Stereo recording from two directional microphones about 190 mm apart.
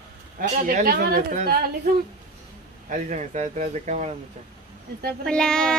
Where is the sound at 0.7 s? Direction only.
50° right (ahead or behind).